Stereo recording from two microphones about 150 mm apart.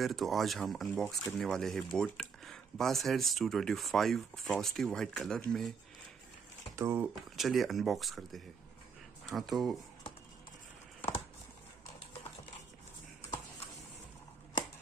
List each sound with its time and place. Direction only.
0.0 s speech: centre (ahead or behind)
6.7 s speech: 15° right (ahead or behind)
7.3 s speech: centre (ahead or behind)
11.0 s a sound: 15° left (ahead or behind)